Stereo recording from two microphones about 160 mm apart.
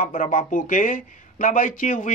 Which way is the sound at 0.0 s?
55° left (ahead or behind).